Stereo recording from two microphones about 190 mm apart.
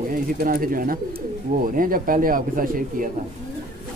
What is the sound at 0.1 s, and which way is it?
Speech, 45° right (ahead or behind).